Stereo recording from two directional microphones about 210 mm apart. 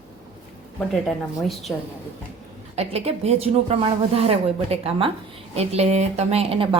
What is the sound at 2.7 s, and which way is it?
A woman's voice, 30° right (ahead or behind).